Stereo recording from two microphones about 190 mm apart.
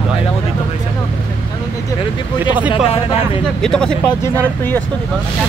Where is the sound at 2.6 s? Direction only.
10° right (ahead or behind).